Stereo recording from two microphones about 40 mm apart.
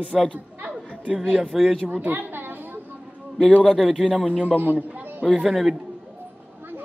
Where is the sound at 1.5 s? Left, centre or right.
Centre.